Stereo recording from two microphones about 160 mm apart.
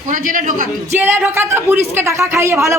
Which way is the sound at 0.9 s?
15° right (ahead or behind).